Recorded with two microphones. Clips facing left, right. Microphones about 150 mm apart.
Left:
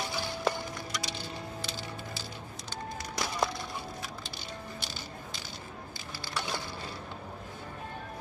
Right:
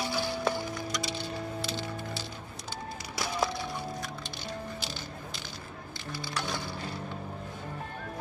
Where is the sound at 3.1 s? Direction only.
Centre (ahead or behind).